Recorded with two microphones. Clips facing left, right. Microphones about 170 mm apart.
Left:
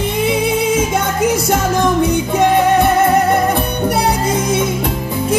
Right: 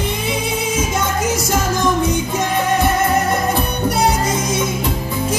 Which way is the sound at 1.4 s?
60° left (ahead or behind).